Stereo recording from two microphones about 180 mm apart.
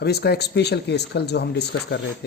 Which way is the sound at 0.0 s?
65° left (ahead or behind).